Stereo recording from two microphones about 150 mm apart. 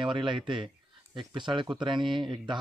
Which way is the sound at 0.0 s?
35° right (ahead or behind).